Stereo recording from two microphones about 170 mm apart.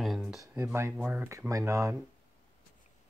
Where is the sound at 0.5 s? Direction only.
15° right (ahead or behind).